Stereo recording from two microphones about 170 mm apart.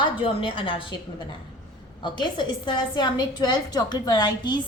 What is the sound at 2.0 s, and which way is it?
A woman's voice, 25° left (ahead or behind).